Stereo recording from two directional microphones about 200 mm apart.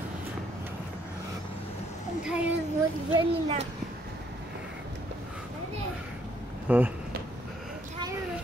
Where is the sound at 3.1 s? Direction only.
30° right (ahead or behind).